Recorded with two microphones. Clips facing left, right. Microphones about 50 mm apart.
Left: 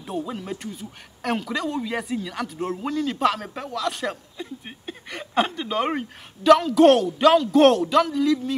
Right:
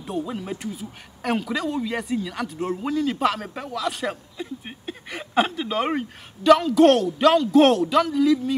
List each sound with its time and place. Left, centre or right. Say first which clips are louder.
0.0 s speech: right 1 dB; centre